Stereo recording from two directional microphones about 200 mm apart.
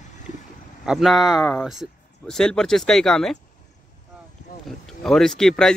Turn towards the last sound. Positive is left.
turn(degrees=5)  # may be behind; listen again after turning